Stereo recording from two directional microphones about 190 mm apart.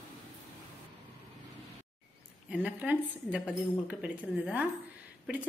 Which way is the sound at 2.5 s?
5° right (ahead or behind).